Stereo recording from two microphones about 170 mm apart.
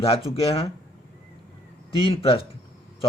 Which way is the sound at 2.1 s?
35° left (ahead or behind).